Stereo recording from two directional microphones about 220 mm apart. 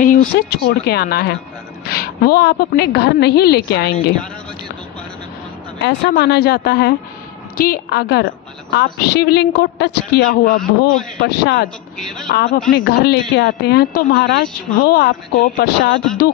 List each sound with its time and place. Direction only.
0.0 s a woman's voice: 40° left (ahead or behind)
5.8 s a woman's voice: 50° left (ahead or behind)